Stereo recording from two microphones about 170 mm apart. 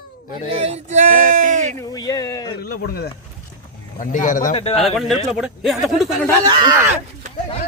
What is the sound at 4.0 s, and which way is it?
Speech, 50° left (ahead or behind).